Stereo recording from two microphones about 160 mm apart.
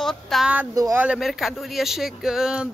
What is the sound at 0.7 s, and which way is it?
Speech, 20° right (ahead or behind).